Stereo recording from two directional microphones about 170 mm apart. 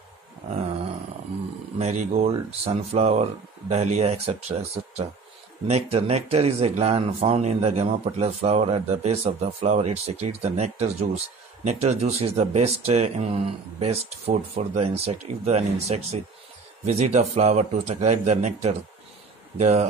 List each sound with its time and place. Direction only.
1.8 s speech: 40° right (ahead or behind)